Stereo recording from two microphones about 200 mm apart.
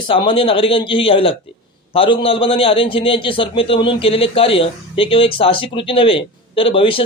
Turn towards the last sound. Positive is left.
turn(degrees=25)  # may be behind; listen again after turning